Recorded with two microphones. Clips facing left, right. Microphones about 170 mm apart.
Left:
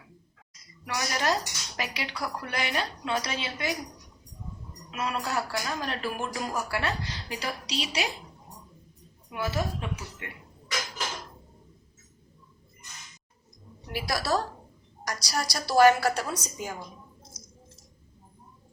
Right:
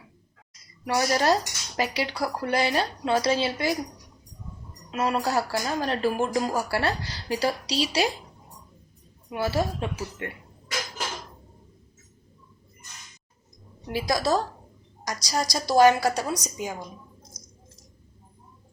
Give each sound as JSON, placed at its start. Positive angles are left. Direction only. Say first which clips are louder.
{"t": 0.9, "sound": "speech", "louder": "right 6 dB", "side_deg": -30}
{"t": 4.9, "sound": "speech", "louder": "right 6 dB", "side_deg": -35}
{"t": 9.3, "sound": "speech", "louder": "right 4 dB", "side_deg": -30}
{"t": 13.8, "sound": "a woman's voice", "louder": "right 5 dB", "side_deg": -20}